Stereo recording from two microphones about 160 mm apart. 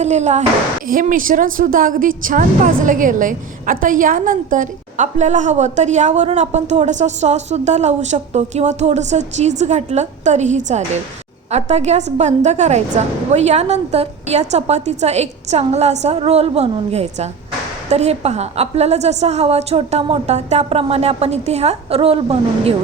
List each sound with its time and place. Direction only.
0.0 s a woman's voice: 45° right (ahead or behind)
0.9 s a woman's voice: 60° right (ahead or behind); by 22.7 s 35° right (ahead or behind)